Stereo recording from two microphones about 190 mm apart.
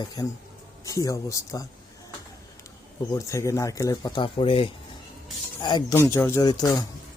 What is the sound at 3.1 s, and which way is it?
Speech, 15° left (ahead or behind).